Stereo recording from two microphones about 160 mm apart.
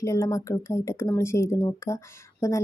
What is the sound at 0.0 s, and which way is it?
Speech, 20° left (ahead or behind).